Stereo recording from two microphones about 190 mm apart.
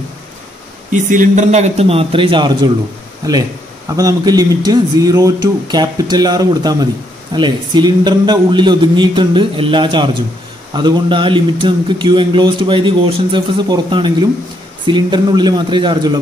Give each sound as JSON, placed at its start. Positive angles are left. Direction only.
{"t": 0.9, "sound": "a man's voice", "side_deg": -40}
{"t": 3.9, "sound": "speech", "side_deg": -20}